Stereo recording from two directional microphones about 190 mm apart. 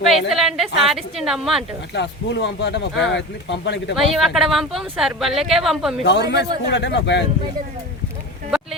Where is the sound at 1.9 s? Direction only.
65° left (ahead or behind).